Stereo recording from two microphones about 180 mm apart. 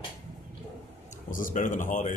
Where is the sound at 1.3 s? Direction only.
50° left (ahead or behind).